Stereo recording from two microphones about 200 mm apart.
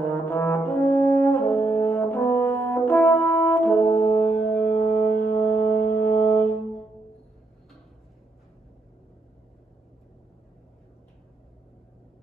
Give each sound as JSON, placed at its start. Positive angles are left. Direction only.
{"t": 0.0, "sound": "brass instrument", "side_deg": 10}